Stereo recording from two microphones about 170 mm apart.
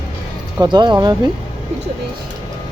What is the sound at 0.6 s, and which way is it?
Speech, 25° right (ahead or behind).